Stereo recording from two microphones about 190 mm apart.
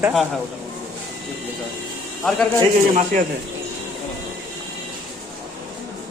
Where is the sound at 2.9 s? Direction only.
40° right (ahead or behind).